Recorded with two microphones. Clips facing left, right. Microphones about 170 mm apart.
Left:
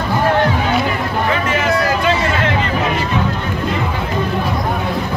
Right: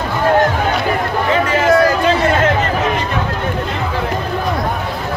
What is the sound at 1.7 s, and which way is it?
Chatter, 45° right (ahead or behind).